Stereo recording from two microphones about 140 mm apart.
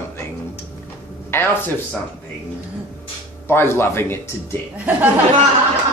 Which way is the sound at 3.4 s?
15° left (ahead or behind).